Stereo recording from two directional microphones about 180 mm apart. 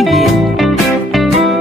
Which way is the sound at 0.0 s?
Centre (ahead or behind).